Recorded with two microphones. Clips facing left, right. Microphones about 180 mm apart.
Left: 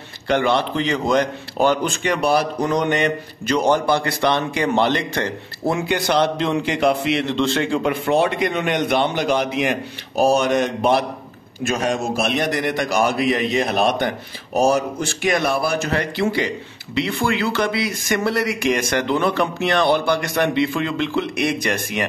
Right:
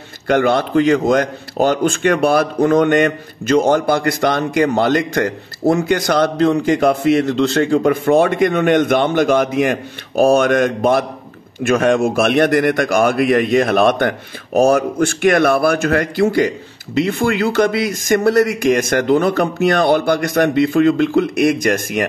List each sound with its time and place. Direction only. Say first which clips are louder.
0.3 s a man's voice: right 4 dB; 45° right (ahead or behind)